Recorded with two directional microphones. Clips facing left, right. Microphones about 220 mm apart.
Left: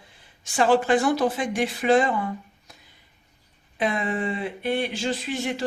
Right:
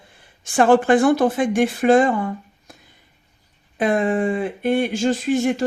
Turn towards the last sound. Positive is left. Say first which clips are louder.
# right 8 dB
turn(degrees=-45)  # may be behind; listen again after turning